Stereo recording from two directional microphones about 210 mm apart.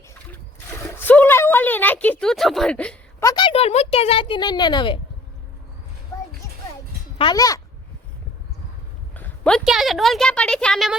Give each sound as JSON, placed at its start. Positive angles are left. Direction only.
{"t": 0.1, "sound": "splash", "side_deg": 10}
{"t": 7.2, "sound": "speech", "side_deg": 20}
{"t": 9.1, "sound": "a woman's voice", "side_deg": 5}